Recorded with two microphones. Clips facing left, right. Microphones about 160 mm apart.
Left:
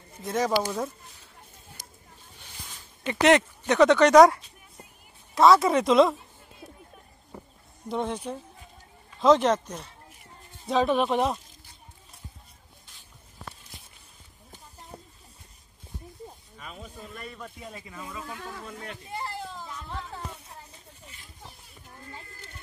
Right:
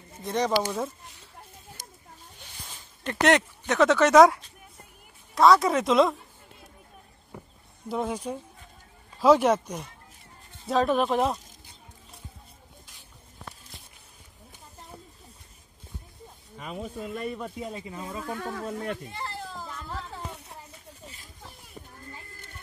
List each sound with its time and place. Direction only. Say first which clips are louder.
0.2 s speech: even; centre (ahead or behind)
3.0 s speech: left 2 dB; centre (ahead or behind)
7.9 s speech: even; 5° right (ahead or behind)
9.2 s speech: right 1 dB; 10° right (ahead or behind)
10.7 s speech: even; centre (ahead or behind)
16.7 s speech: right 10 dB; 20° right (ahead or behind)
17.6 s speech: right 6 dB; 25° right (ahead or behind)
18.3 s speech: right 7 dB; 50° right (ahead or behind)
19.5 s a sound: right 1 dB; centre (ahead or behind)